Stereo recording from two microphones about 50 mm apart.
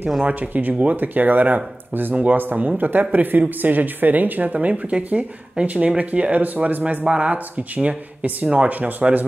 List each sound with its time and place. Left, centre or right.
0.2 s speech: right